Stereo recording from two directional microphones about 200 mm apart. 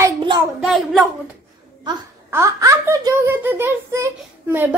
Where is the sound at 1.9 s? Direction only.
15° right (ahead or behind).